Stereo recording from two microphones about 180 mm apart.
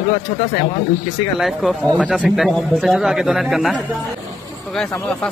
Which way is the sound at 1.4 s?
Centre (ahead or behind).